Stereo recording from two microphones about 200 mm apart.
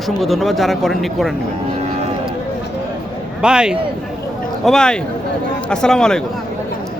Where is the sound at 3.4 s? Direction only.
5° right (ahead or behind).